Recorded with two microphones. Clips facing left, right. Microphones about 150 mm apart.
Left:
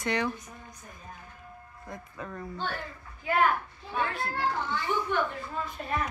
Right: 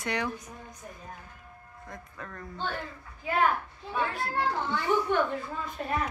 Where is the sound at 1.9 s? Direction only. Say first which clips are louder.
Left 3 dB; 10° left (ahead or behind).